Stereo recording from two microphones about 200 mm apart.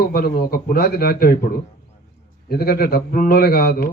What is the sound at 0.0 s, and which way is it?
A man's voice, 50° left (ahead or behind).